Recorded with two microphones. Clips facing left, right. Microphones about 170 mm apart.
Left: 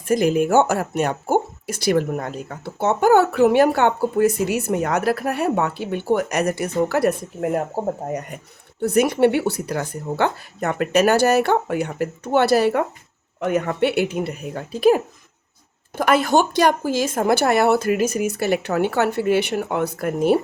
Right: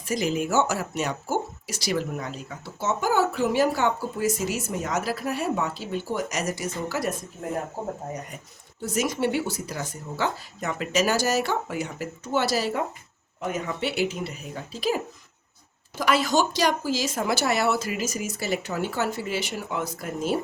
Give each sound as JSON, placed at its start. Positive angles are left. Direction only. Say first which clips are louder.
{"t": 0.0, "sound": "speech", "louder": "left 8 dB", "side_deg": 55}
{"t": 8.8, "sound": "speech", "louder": "left 9 dB", "side_deg": 60}